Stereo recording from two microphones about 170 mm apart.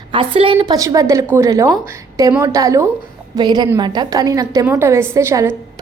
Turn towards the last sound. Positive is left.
turn(degrees=-15)  # may be behind; listen again after turning